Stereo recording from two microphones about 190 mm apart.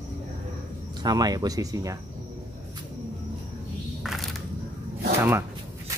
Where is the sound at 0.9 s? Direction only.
20° right (ahead or behind).